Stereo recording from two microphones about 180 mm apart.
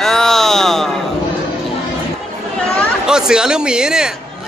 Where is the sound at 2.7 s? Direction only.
5° right (ahead or behind).